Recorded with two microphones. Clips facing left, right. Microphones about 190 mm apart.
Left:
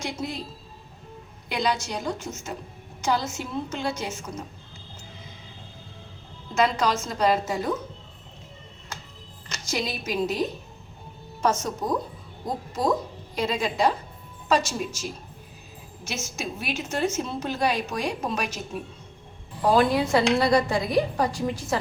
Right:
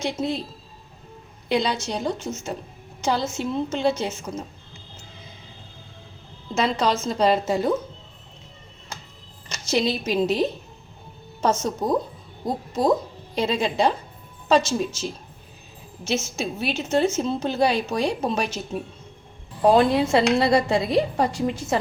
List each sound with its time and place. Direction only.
0.0 s a woman's voice: 25° right (ahead or behind)
1.5 s a woman's voice: 25° right (ahead or behind)
6.5 s a woman's voice: 25° right (ahead or behind)
9.5 s a woman's voice: 25° right (ahead or behind)
13.3 s a woman's voice: 25° right (ahead or behind)
19.6 s a woman's voice: 25° right (ahead or behind)